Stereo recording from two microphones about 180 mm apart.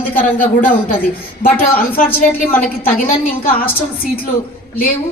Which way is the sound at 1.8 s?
55° left (ahead or behind).